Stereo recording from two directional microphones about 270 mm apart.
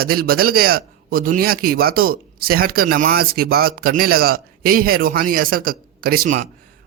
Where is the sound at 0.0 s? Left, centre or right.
Right.